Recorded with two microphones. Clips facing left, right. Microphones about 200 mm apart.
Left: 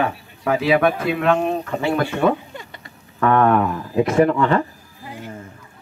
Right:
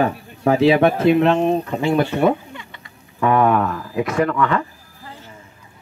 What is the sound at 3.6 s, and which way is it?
Speech, 15° left (ahead or behind).